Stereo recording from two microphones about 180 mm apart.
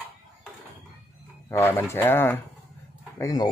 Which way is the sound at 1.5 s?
15° left (ahead or behind).